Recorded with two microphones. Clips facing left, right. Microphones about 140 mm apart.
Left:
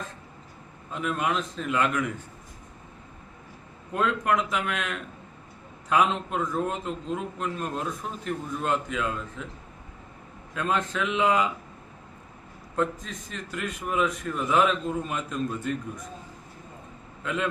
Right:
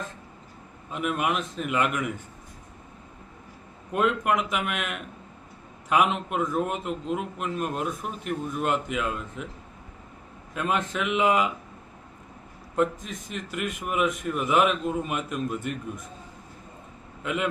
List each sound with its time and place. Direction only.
0.9 s a man's voice: 10° right (ahead or behind)
3.9 s a man's voice: 5° right (ahead or behind)
10.5 s a man's voice: 5° right (ahead or behind)
12.7 s a man's voice: 15° right (ahead or behind)
13.5 s a man's voice: centre (ahead or behind)
17.2 s a man's voice: 10° right (ahead or behind)